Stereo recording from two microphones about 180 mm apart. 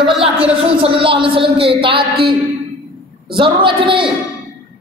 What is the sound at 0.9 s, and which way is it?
A man's voice, 30° right (ahead or behind).